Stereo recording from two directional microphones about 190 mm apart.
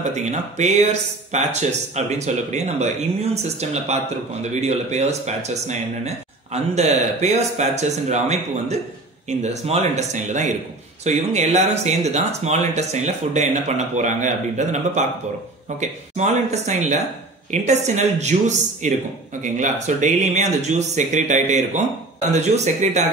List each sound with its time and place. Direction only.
0.1 s speech: 35° right (ahead or behind)